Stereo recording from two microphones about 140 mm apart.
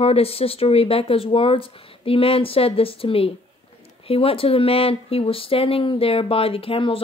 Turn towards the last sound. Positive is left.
turn(degrees=40)  # may be behind; listen again after turning